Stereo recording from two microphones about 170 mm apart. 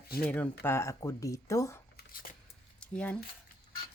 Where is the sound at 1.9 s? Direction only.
60° left (ahead or behind).